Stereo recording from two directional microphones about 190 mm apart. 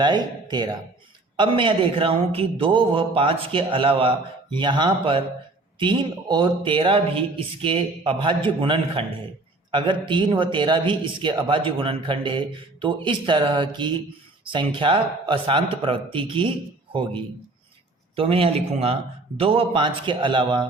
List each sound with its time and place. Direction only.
0.0 s a man's voice: 25° right (ahead or behind)
18.2 s a man's voice: 30° right (ahead or behind)